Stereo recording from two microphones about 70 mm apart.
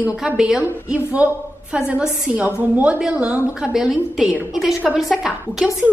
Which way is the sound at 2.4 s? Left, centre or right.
Right.